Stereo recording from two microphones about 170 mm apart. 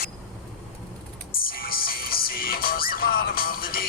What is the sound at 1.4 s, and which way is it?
Music, 60° left (ahead or behind).